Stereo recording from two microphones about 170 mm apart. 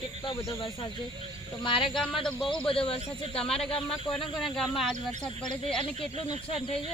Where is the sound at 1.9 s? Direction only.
Centre (ahead or behind).